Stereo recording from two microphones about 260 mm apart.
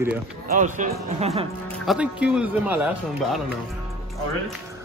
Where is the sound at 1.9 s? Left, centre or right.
Centre.